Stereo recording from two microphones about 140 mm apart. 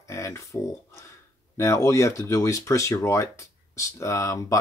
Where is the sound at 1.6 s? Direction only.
20° left (ahead or behind).